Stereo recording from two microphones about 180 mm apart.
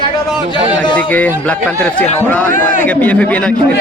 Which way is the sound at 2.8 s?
10° left (ahead or behind).